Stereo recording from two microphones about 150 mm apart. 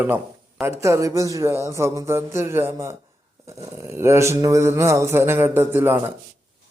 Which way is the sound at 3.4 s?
20° right (ahead or behind).